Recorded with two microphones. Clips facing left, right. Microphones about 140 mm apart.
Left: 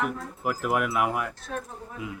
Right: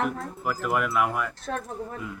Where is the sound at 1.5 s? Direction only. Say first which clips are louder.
Right 3 dB; 55° right (ahead or behind).